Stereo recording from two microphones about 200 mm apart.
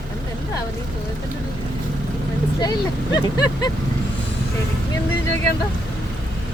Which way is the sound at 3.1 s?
20° left (ahead or behind).